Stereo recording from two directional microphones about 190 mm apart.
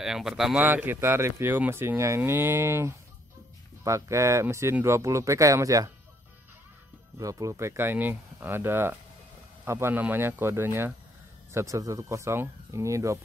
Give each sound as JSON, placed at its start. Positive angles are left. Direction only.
{"t": 0.0, "sound": "speech", "side_deg": 0}
{"t": 7.2, "sound": "speech", "side_deg": -15}